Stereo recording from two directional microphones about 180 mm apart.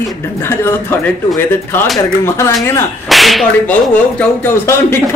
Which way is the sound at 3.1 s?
Centre (ahead or behind).